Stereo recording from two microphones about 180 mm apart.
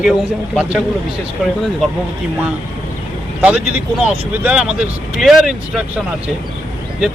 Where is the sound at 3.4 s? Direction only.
10° right (ahead or behind).